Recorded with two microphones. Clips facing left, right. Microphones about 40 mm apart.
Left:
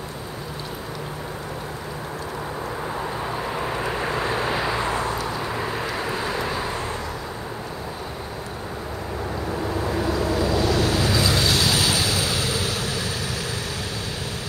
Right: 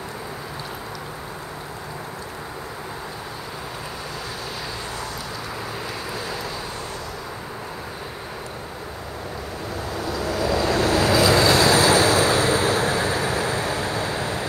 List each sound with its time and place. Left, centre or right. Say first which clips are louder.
3.8 s vehicle: left 8 dB; left
10.0 s vehicle: even; left
10.5 s waves: right 1 dB; right
11.2 s vehicle: right 5 dB; right